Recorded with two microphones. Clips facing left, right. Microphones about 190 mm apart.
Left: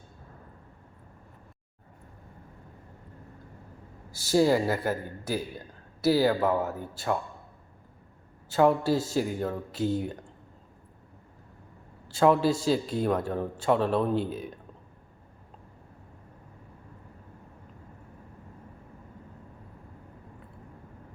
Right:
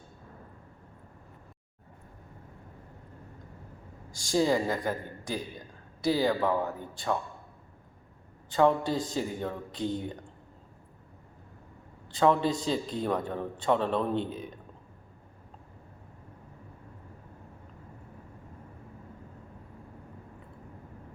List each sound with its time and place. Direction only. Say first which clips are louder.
4.1 s a man's voice: left 3 dB; 5° left (ahead or behind)
8.4 s a man's voice: left 2 dB; 5° left (ahead or behind)
12.0 s a man's voice: left 3 dB; 5° left (ahead or behind)